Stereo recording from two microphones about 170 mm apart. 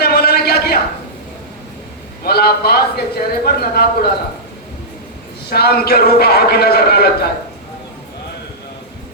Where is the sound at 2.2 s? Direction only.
65° left (ahead or behind).